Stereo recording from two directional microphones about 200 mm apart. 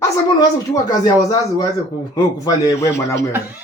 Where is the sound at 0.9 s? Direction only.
20° left (ahead or behind).